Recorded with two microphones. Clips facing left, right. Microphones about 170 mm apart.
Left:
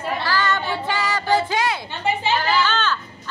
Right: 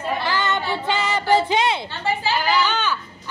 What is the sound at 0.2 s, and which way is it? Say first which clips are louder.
Child singing: even; 20° right (ahead or behind).